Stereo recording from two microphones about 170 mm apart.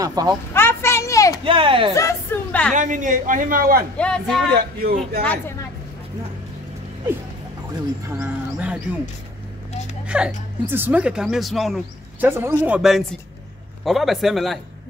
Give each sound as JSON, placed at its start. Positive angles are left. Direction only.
{"t": 0.0, "sound": "speech", "side_deg": -20}
{"t": 0.5, "sound": "a sound", "side_deg": 15}
{"t": 1.4, "sound": "speech", "side_deg": -30}
{"t": 2.0, "sound": "a woman's voice", "side_deg": 15}
{"t": 2.7, "sound": "a woman's voice", "side_deg": -50}
{"t": 3.9, "sound": "speech", "side_deg": 5}
{"t": 4.8, "sound": "speech", "side_deg": -60}
{"t": 5.2, "sound": "a woman's voice", "side_deg": 10}
{"t": 8.1, "sound": "speech", "side_deg": -10}
{"t": 10.0, "sound": "speech", "side_deg": -5}
{"t": 12.2, "sound": "speech", "side_deg": -15}